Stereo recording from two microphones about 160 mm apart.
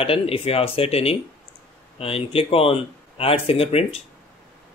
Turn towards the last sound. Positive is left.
turn(degrees=40)  # may be behind; listen again after turning